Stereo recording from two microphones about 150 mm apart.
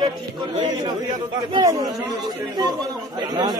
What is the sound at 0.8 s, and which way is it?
A man's voice, 30° right (ahead or behind).